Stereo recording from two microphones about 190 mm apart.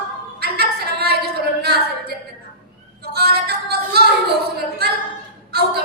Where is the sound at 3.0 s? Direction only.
55° right (ahead or behind).